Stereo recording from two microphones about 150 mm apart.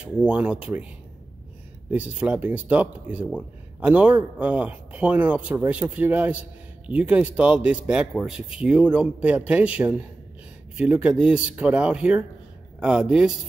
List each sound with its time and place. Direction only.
0.0 s speech: 10° right (ahead or behind)
1.9 s speech: 10° right (ahead or behind)